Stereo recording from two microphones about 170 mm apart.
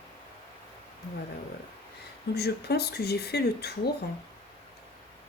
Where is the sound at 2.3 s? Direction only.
70° left (ahead or behind).